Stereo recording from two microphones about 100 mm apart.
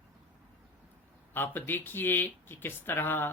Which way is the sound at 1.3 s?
20° left (ahead or behind).